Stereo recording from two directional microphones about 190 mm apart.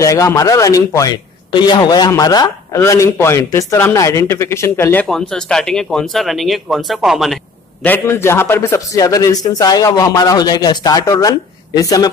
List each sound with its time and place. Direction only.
0.0 s a man's voice: 15° left (ahead or behind)
5.0 s speech: centre (ahead or behind)
7.8 s a man's voice: 10° left (ahead or behind)